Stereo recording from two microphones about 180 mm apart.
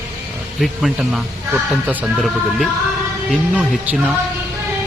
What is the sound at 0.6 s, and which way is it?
Speech, 5° right (ahead or behind).